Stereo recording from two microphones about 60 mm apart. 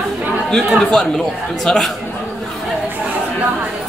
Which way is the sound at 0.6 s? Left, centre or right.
Centre.